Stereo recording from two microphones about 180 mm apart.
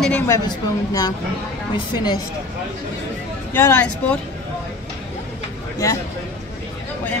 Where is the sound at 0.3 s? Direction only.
20° left (ahead or behind).